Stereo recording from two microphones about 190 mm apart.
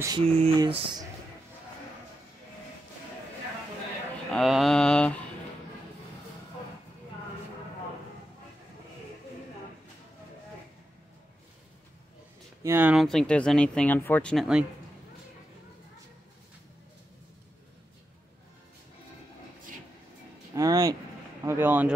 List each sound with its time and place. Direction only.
0.0 s a sound: 20° right (ahead or behind)
4.3 s speech: centre (ahead or behind)
12.6 s speech: 10° right (ahead or behind)
20.5 s speech: 20° right (ahead or behind)